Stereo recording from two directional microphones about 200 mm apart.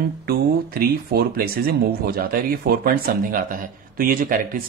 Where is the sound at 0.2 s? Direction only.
50° right (ahead or behind).